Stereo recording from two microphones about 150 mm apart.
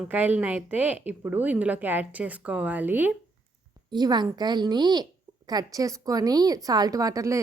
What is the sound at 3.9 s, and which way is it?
A woman's voice, 30° right (ahead or behind).